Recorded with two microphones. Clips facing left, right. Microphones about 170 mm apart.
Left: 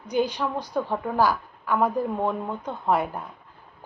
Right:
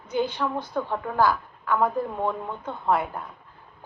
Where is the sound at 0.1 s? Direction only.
15° left (ahead or behind).